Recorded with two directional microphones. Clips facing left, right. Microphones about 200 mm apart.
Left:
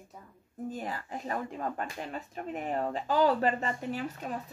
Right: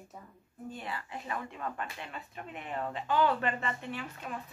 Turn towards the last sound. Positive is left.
turn(degrees=40)  # may be behind; listen again after turning